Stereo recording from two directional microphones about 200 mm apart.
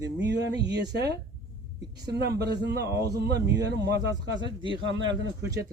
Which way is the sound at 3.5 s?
55° right (ahead or behind).